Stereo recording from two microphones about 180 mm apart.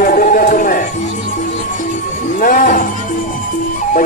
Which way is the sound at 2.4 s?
50° left (ahead or behind).